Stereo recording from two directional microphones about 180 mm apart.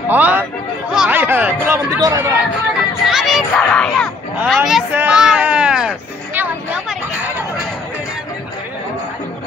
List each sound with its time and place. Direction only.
0.1 s speech: 10° right (ahead or behind)
3.1 s speech: centre (ahead or behind)
4.6 s a sound: 5° right (ahead or behind)